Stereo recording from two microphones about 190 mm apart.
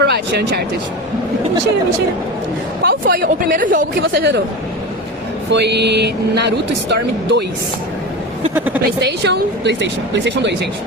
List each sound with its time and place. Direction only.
0.0 s speech: 60° right (ahead or behind)
2.8 s speech: 50° right (ahead or behind)
4.0 s speech: 90° right
5.5 s speech: 65° right (ahead or behind)
8.5 s speech: 10° right (ahead or behind)
9.2 s speech: 65° right (ahead or behind)